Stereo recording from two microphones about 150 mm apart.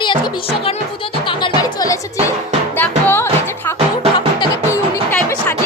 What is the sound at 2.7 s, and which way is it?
Music, 15° left (ahead or behind).